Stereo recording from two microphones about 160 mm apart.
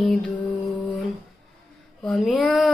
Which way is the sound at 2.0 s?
5° left (ahead or behind).